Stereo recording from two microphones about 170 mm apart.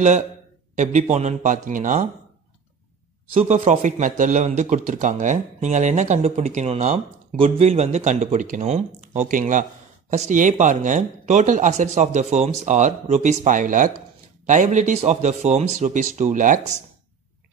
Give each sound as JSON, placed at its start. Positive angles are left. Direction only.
{"t": 1.1, "sound": "a man's voice", "side_deg": -45}
{"t": 3.3, "sound": "a man's voice", "side_deg": -40}